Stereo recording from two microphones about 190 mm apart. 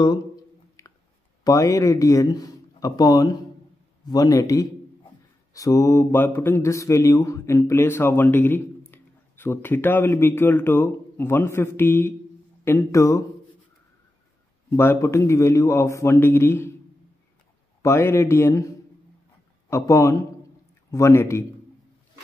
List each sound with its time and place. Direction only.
0.8 s a sound: 15° left (ahead or behind)
1.4 s a man's voice: 15° left (ahead or behind)
14.7 s speech: 15° left (ahead or behind)
17.8 s speech: 15° left (ahead or behind)
19.7 s speech: 15° left (ahead or behind)